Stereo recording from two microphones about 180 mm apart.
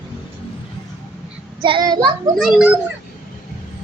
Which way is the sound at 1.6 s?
25° right (ahead or behind).